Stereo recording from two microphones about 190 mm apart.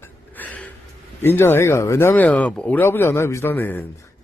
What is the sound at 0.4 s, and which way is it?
Gasp, 10° left (ahead or behind).